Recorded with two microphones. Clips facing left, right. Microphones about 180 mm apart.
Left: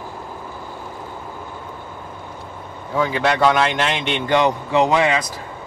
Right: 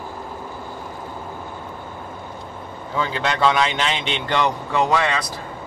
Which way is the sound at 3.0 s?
10° left (ahead or behind).